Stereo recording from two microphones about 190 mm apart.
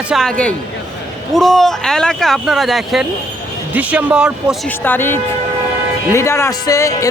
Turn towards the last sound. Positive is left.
turn(degrees=15)  # may be behind; listen again after turning